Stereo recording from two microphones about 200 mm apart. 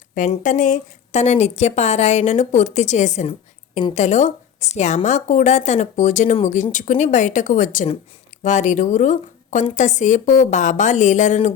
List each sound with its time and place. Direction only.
0.1 s a woman's voice: 40° left (ahead or behind)